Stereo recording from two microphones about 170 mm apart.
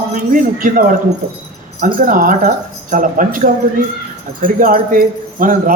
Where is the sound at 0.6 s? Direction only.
55° right (ahead or behind).